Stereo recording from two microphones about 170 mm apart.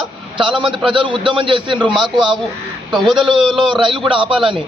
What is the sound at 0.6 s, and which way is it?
A man's voice, 30° right (ahead or behind).